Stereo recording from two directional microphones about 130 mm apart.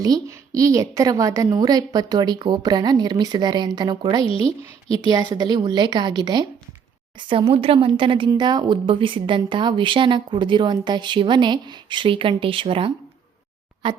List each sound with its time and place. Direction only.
0.0 s a woman's voice: 25° right (ahead or behind)